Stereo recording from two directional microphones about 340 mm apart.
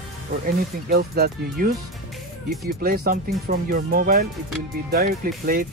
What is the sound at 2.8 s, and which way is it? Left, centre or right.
Speech, right.